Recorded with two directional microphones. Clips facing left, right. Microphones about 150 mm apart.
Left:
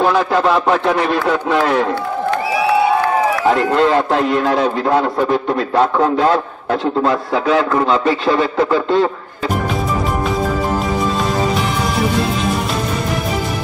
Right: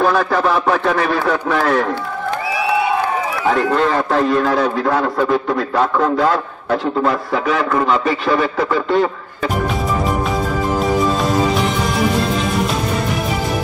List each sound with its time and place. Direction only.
0.0 s a man's voice: 20° left (ahead or behind)
3.4 s a man's voice: 20° left (ahead or behind)